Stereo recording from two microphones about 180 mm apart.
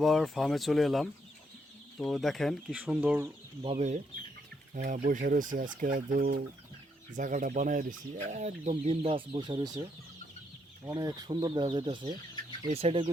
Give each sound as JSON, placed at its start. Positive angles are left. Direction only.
{"t": 0.0, "sound": "speech", "side_deg": 0}
{"t": 3.6, "sound": "speech", "side_deg": -35}
{"t": 10.8, "sound": "speech", "side_deg": -20}